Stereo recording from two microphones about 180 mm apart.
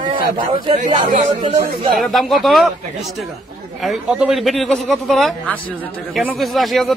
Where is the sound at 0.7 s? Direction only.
45° right (ahead or behind).